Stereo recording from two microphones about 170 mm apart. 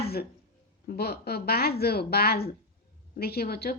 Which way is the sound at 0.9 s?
65° left (ahead or behind).